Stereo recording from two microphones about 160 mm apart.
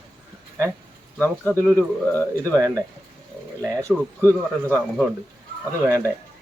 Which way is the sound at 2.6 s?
20° right (ahead or behind).